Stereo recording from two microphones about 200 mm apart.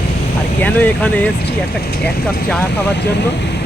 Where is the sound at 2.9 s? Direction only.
55° left (ahead or behind).